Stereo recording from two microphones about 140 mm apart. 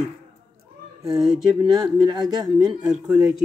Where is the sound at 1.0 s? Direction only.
5° right (ahead or behind).